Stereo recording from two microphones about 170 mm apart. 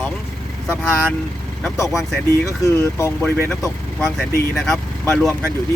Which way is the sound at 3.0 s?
15° left (ahead or behind).